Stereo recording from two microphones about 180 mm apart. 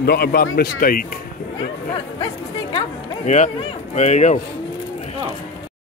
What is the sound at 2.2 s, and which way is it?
Speech, 25° left (ahead or behind).